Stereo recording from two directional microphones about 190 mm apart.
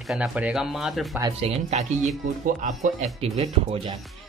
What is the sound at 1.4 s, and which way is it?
Speech, 35° right (ahead or behind).